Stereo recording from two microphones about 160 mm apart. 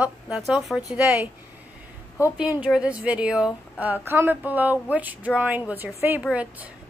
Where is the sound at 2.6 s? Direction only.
5° right (ahead or behind).